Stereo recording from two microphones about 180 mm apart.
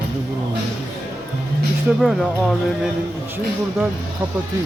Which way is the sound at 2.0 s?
Centre (ahead or behind).